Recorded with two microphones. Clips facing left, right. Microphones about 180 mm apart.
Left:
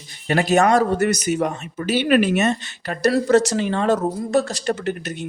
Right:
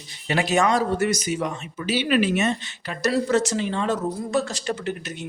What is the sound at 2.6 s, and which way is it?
Speech, 60° left (ahead or behind).